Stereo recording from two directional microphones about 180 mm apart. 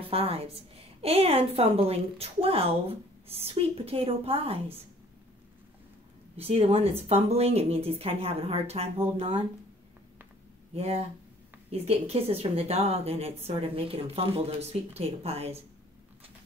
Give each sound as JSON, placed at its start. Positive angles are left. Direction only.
{"t": 0.1, "sound": "a woman's voice", "side_deg": -30}
{"t": 6.3, "sound": "a woman's voice", "side_deg": -35}
{"t": 10.7, "sound": "a woman's voice", "side_deg": -35}